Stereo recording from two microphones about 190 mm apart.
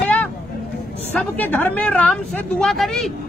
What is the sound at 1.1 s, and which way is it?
A woman's voice, 10° left (ahead or behind).